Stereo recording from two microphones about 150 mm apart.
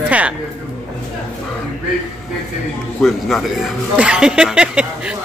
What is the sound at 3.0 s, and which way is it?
Speech, centre (ahead or behind).